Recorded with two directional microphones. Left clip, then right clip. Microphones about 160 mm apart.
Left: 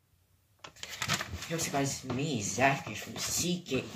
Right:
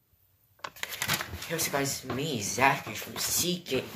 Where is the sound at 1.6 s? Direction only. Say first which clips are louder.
Right 2 dB; 15° left (ahead or behind).